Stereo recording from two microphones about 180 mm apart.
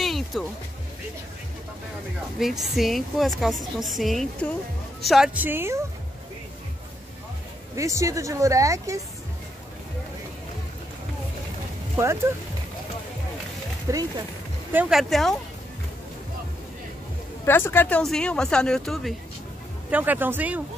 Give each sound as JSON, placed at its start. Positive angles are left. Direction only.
{"t": 0.0, "sound": "music", "side_deg": 0}
{"t": 2.3, "sound": "a woman's voice", "side_deg": 0}
{"t": 7.7, "sound": "speech", "side_deg": -15}
{"t": 12.0, "sound": "speech", "side_deg": -15}
{"t": 13.8, "sound": "speech", "side_deg": -20}
{"t": 14.7, "sound": "a woman's voice", "side_deg": -5}
{"t": 17.5, "sound": "a woman's voice", "side_deg": 10}
{"t": 19.9, "sound": "speech", "side_deg": -10}